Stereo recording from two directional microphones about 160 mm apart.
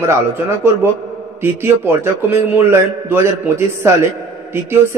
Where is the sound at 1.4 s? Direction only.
15° right (ahead or behind).